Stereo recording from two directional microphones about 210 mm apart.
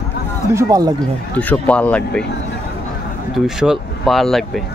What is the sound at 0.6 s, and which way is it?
Speech, 15° right (ahead or behind).